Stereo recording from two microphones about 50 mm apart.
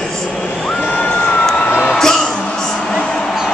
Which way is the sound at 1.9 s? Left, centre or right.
Centre.